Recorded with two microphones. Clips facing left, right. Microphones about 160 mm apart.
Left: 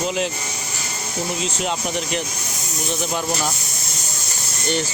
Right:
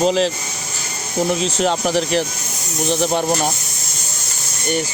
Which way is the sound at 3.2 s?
45° right (ahead or behind).